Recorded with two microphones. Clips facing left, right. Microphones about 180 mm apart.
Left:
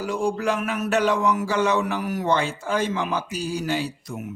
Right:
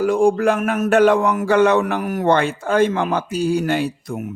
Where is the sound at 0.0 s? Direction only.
50° right (ahead or behind).